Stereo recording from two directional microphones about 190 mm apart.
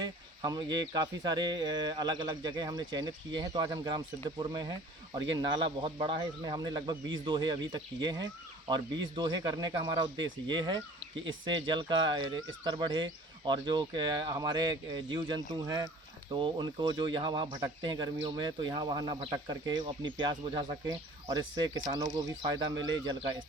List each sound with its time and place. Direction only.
0.0 s speech: 20° right (ahead or behind)
10.2 s speech: 75° right (ahead or behind)
10.5 s speech: 25° right (ahead or behind)